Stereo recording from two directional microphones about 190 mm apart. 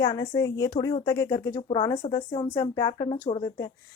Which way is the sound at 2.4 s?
15° left (ahead or behind).